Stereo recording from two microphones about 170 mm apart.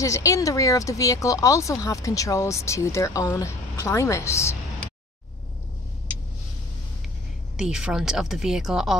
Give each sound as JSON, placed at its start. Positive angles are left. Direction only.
{"t": 0.0, "sound": "speech", "side_deg": 20}
{"t": 7.5, "sound": "a woman's voice", "side_deg": -5}